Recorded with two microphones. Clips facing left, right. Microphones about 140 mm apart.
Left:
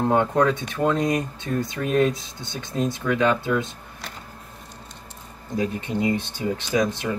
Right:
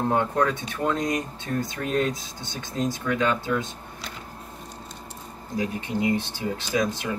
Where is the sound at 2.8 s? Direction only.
20° left (ahead or behind).